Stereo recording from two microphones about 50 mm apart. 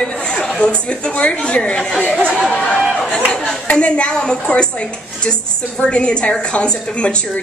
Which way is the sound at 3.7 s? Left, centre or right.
Left.